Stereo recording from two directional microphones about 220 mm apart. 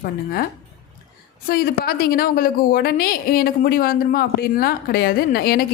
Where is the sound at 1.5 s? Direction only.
45° left (ahead or behind).